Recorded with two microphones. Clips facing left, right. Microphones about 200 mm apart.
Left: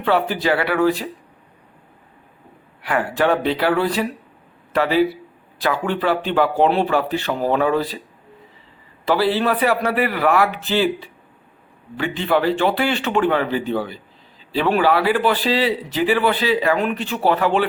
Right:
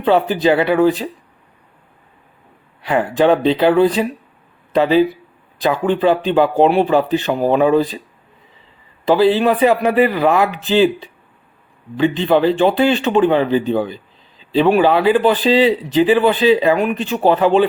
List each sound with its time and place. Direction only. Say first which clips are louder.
0.0 s speech: right 5 dB; 20° right (ahead or behind)
2.8 s a man's voice: right 5 dB; 20° right (ahead or behind)
9.0 s speech: right 5 dB; 20° right (ahead or behind)